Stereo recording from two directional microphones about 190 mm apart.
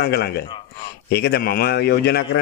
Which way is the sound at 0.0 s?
60° left (ahead or behind).